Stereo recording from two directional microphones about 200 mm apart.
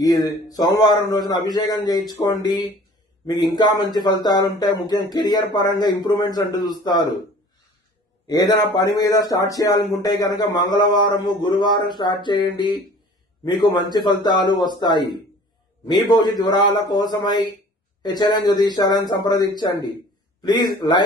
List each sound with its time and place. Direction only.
0.0 s speech: 20° left (ahead or behind)
8.3 s speech: 20° left (ahead or behind)